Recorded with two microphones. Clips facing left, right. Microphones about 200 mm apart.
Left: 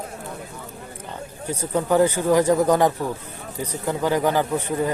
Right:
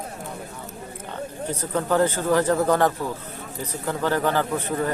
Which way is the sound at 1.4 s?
10° left (ahead or behind).